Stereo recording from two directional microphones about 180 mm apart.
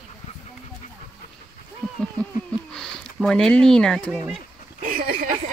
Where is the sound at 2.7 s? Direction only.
5° left (ahead or behind).